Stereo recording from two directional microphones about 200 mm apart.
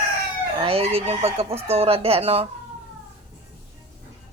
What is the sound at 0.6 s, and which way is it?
Speech, 30° right (ahead or behind).